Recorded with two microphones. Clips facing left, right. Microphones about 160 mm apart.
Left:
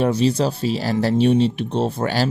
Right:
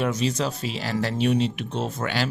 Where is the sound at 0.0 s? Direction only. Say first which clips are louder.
Left 6 dB; 30° left (ahead or behind).